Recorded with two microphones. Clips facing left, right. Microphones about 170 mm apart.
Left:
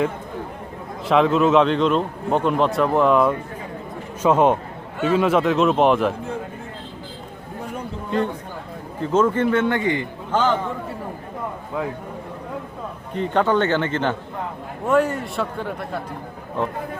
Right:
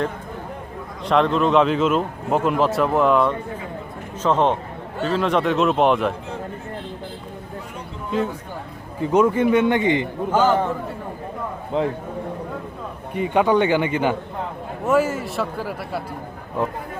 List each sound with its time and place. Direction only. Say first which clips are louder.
1.0 s a man's voice: left 1 dB; 5° left (ahead or behind)
9.0 s a man's voice: right 1 dB; 10° right (ahead or behind)
10.3 s a man's voice: right 2 dB; 5° right (ahead or behind)
11.7 s a man's voice: right 5 dB; 25° right (ahead or behind)
13.1 s a man's voice: right 1 dB; 10° right (ahead or behind)